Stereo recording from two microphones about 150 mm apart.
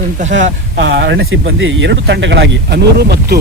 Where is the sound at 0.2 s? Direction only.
55° right (ahead or behind).